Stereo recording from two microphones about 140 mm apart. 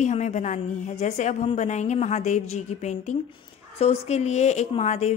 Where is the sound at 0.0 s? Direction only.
55° left (ahead or behind).